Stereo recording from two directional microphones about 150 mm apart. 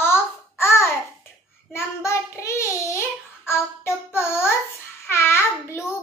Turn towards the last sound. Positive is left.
turn(degrees=15)  # may be behind; listen again after turning